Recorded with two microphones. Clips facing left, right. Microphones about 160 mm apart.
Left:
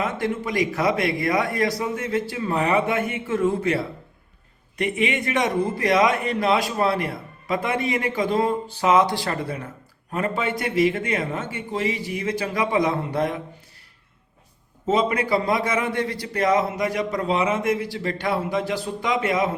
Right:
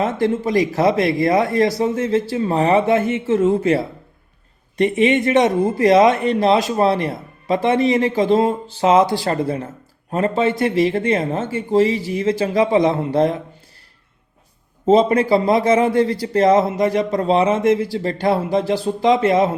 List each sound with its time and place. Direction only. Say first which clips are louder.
0.0 s speech: right 7 dB; 30° right (ahead or behind)
14.8 s speech: right 8 dB; 30° right (ahead or behind)